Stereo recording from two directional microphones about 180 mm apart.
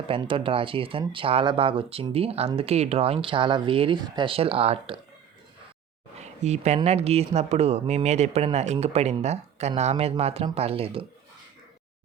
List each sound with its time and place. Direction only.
0.1 s speech: 30° right (ahead or behind)
6.1 s a sound: 40° right (ahead or behind)
6.7 s speech: 35° right (ahead or behind)